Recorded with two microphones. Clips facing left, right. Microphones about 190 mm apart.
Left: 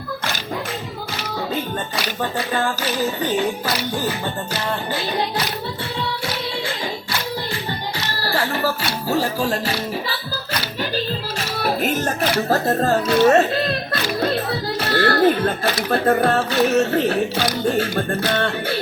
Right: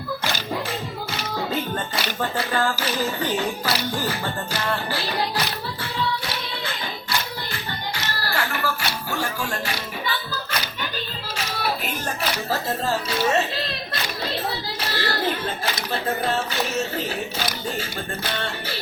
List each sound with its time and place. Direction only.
4.7 s music: 20° left (ahead or behind)
8.2 s speech: 30° left (ahead or behind)
11.6 s speech: 45° left (ahead or behind)
12.5 s speech: 60° left (ahead or behind)